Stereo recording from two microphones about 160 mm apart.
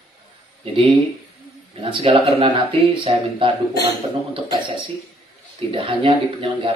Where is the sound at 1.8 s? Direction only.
40° right (ahead or behind).